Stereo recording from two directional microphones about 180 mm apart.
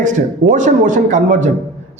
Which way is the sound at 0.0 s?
45° right (ahead or behind).